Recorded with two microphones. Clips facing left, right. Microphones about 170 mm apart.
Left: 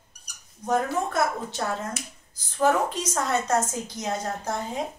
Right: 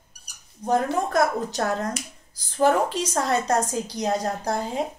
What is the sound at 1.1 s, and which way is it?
A woman's voice, 40° right (ahead or behind).